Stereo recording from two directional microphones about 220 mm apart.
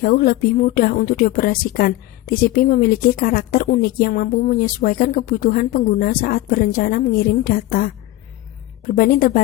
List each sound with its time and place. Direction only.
0.0 s speech: 40° left (ahead or behind)